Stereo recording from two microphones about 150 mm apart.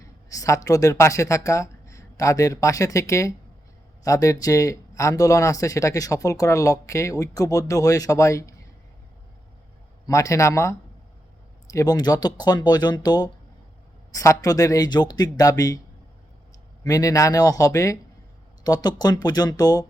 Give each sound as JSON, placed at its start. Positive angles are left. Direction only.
{"t": 0.3, "sound": "speech", "side_deg": 20}
{"t": 10.1, "sound": "speech", "side_deg": 20}
{"t": 16.8, "sound": "speech", "side_deg": 25}